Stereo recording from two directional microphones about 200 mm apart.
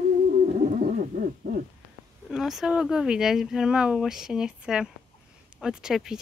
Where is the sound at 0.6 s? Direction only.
40° right (ahead or behind).